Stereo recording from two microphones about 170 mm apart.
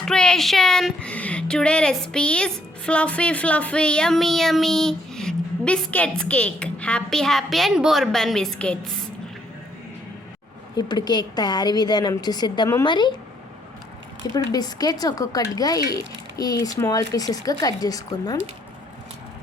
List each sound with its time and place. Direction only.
0.0 s speech: 5° left (ahead or behind)
10.8 s a woman's voice: 25° left (ahead or behind)
14.3 s a woman's voice: 20° left (ahead or behind)